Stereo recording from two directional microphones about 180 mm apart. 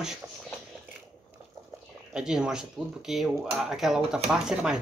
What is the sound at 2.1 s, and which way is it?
Speech, 5° right (ahead or behind).